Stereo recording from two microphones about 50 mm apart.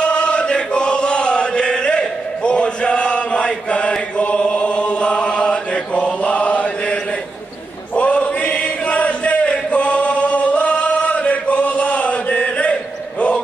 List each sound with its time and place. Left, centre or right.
0.0 s chant: left